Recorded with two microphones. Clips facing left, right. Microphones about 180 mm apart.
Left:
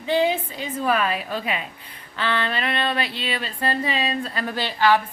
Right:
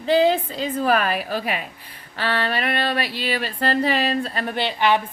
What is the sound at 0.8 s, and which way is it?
Speech, 65° right (ahead or behind).